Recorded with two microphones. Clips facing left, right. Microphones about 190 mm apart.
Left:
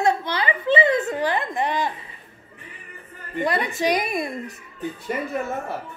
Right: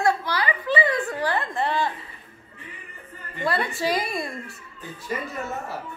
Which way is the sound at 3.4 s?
15° left (ahead or behind).